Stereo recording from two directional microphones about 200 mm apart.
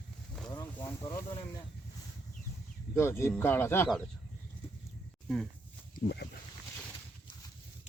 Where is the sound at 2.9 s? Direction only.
10° left (ahead or behind).